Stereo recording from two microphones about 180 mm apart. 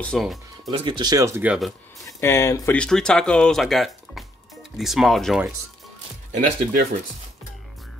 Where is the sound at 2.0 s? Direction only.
15° left (ahead or behind).